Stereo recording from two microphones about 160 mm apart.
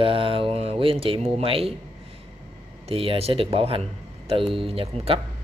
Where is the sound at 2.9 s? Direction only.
35° right (ahead or behind).